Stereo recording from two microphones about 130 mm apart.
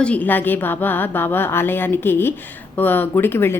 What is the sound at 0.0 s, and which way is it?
Speech, 10° left (ahead or behind).